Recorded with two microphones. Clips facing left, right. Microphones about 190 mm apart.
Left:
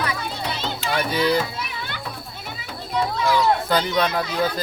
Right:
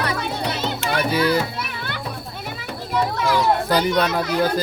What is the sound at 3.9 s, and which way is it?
Speech, 5° right (ahead or behind).